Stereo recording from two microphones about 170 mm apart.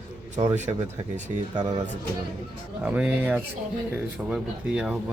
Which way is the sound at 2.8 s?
10° right (ahead or behind).